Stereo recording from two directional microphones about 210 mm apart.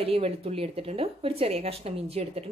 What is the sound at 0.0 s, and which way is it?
Speech, 30° right (ahead or behind).